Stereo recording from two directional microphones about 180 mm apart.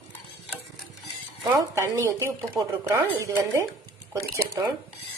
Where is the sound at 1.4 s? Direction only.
15° right (ahead or behind).